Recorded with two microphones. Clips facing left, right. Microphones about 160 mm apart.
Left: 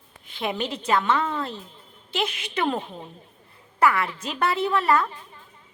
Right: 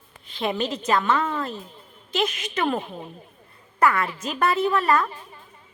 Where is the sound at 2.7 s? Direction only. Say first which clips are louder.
Right 2 dB; 10° right (ahead or behind).